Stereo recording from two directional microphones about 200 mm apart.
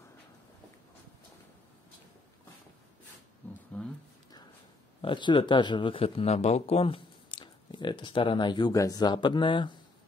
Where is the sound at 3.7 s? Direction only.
5° left (ahead or behind).